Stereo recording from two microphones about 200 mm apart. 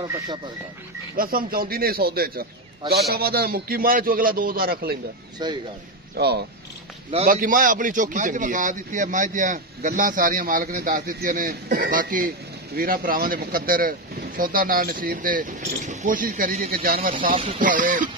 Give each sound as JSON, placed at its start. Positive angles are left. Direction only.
{"t": 1.1, "sound": "speech", "side_deg": -45}
{"t": 5.4, "sound": "speech", "side_deg": -20}
{"t": 6.1, "sound": "speech", "side_deg": -55}
{"t": 7.2, "sound": "a man's voice", "side_deg": -45}